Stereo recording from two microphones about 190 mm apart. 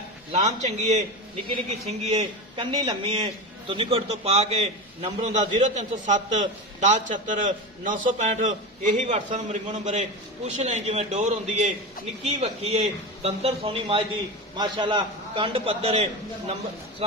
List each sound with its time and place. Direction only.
0.3 s a man's voice: 35° right (ahead or behind)